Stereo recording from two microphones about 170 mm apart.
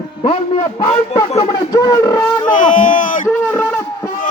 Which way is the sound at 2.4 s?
50° left (ahead or behind).